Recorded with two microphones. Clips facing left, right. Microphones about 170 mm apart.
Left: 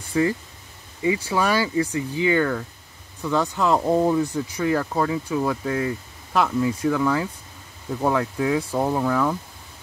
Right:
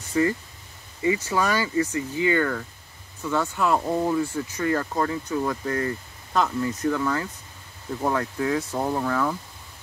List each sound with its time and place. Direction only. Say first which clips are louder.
1.0 s speech: left 1 dB; 15° left (ahead or behind)